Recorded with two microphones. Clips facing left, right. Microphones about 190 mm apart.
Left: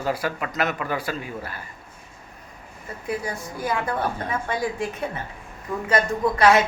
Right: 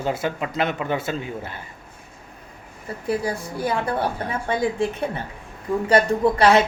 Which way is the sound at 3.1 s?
35° right (ahead or behind).